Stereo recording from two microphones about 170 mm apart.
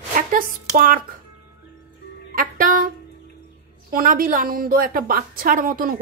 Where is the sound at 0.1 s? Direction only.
50° right (ahead or behind).